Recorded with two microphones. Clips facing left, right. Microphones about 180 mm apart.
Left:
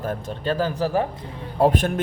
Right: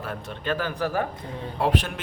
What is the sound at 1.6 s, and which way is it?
Speech, 45° left (ahead or behind).